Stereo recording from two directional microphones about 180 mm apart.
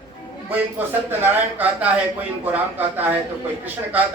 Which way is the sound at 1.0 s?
10° right (ahead or behind).